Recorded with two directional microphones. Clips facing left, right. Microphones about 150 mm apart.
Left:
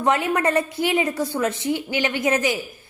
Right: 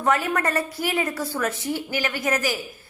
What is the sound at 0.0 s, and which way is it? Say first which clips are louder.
A woman's voice: left 2 dB; 20° left (ahead or behind).